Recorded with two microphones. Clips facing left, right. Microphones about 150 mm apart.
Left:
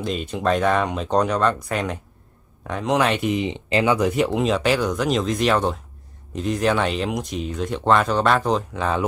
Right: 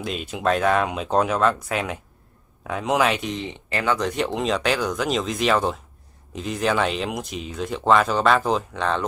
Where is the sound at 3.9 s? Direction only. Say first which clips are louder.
Left 4 dB; 5° left (ahead or behind).